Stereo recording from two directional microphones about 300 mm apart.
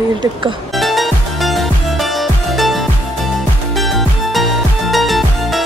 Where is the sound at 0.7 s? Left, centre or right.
Centre.